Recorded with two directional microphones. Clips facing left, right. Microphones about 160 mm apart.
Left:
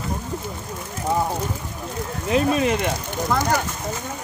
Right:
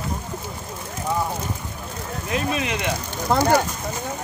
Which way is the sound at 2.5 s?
45° left (ahead or behind).